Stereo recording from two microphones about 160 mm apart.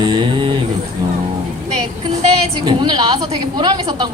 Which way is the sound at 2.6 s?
30° right (ahead or behind).